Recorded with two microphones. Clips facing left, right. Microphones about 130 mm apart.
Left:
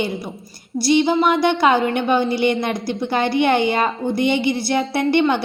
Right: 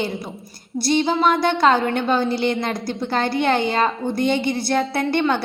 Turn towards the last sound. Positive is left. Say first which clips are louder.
# left 2 dB
turn(degrees=15)  # may be behind; listen again after turning